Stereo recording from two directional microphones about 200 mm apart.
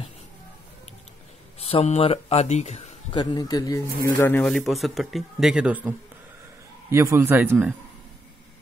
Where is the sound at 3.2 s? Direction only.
20° left (ahead or behind); by 5.9 s 5° right (ahead or behind).